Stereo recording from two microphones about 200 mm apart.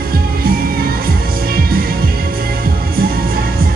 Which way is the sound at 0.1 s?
50° right (ahead or behind).